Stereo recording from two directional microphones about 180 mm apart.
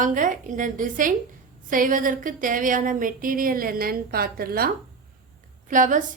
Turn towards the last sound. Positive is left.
turn(degrees=-45)  # may be behind; listen again after turning